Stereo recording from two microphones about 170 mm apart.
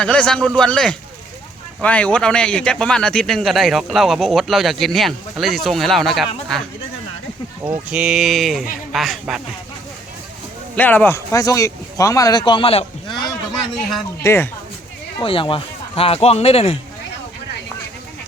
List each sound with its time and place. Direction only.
0.0 s speech: 5° left (ahead or behind)
7.9 s speech: 5° right (ahead or behind)
10.8 s speech: 10° left (ahead or behind); by 12.8 s 30° left (ahead or behind)
14.2 s speech: 15° left (ahead or behind)
15.2 s speech: 30° left (ahead or behind)